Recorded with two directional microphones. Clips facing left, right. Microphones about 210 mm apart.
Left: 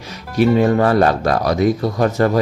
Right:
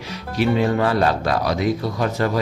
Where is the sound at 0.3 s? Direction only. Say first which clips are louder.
Left 5 dB; 45° left (ahead or behind).